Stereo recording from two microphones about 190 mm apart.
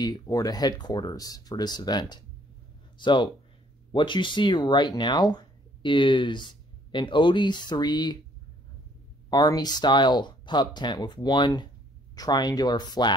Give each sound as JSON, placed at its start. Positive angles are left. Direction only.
{"t": 0.0, "sound": "speech", "side_deg": 20}
{"t": 9.3, "sound": "speech", "side_deg": 20}